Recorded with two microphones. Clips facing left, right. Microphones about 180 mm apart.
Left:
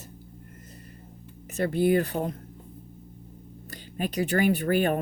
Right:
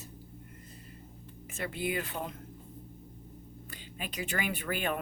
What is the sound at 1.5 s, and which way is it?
Speech, 40° left (ahead or behind).